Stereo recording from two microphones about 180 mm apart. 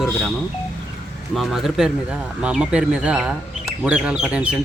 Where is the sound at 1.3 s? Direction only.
Centre (ahead or behind).